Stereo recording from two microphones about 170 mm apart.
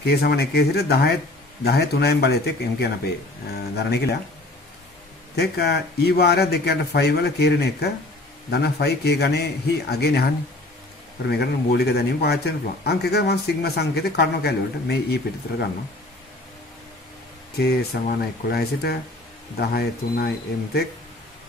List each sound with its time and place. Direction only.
0.0 s speech: 70° left (ahead or behind)
5.3 s speech: 75° left (ahead or behind)
17.6 s speech: 70° left (ahead or behind)